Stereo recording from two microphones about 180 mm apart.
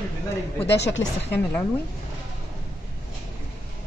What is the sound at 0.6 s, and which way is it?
Speech, 70° left (ahead or behind).